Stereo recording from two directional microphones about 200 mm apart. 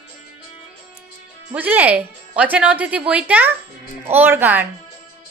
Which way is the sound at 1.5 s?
10° right (ahead or behind).